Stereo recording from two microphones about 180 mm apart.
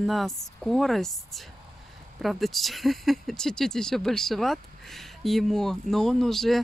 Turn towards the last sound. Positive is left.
turn(degrees=0)  # may be behind; listen again after turning